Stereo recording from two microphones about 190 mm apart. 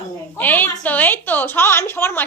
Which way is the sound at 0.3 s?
10° left (ahead or behind).